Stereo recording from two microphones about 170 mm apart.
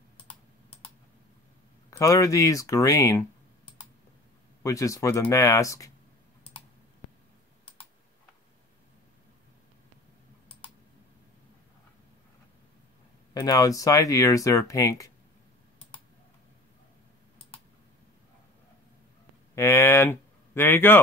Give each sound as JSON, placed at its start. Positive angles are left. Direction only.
{"t": 1.9, "sound": "speech", "side_deg": 20}
{"t": 4.6, "sound": "speech", "side_deg": 20}
{"t": 13.3, "sound": "speech", "side_deg": 20}
{"t": 19.5, "sound": "speech", "side_deg": 15}